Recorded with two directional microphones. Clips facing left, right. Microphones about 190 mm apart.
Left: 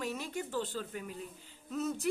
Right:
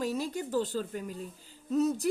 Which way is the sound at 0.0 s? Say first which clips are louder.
Right 6 dB; 35° right (ahead or behind).